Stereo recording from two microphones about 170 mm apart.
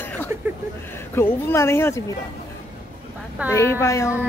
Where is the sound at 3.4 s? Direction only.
15° left (ahead or behind).